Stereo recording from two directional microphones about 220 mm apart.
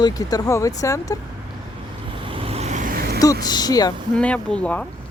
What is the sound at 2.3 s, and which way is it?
Vehicle, 25° right (ahead or behind).